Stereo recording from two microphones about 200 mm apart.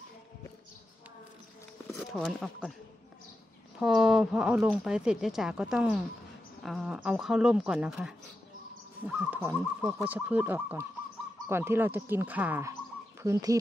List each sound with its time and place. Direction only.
1.9 s speech: centre (ahead or behind)
3.8 s speech: centre (ahead or behind)
9.0 s owl: 10° right (ahead or behind)